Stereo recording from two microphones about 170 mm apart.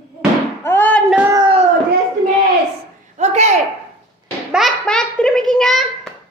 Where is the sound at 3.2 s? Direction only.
40° right (ahead or behind).